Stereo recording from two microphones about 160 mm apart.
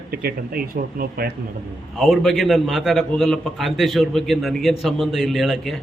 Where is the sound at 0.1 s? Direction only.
70° right (ahead or behind).